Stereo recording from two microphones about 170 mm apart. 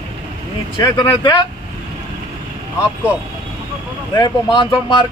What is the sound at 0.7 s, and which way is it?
Speech, 25° left (ahead or behind).